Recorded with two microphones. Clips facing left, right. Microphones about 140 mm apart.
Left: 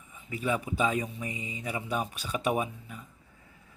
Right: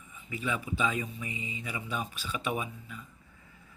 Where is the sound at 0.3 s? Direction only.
45° left (ahead or behind).